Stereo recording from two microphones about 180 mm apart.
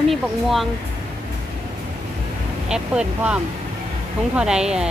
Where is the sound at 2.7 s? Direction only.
5° right (ahead or behind).